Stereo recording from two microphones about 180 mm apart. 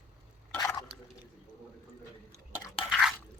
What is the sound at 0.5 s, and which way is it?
Squish, 20° left (ahead or behind).